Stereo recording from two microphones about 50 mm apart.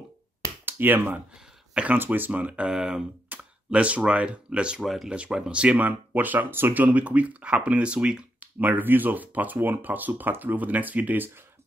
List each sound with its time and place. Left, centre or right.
0.7 s speech: right
2.7 s speech: centre
3.3 s a sound: right
3.7 s speech: right
4.8 s speech: centre
5.1 s speech: right
8.4 s speech: right